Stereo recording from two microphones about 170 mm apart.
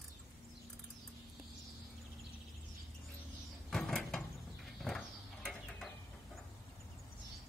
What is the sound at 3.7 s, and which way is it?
Mechanisms, 5° left (ahead or behind).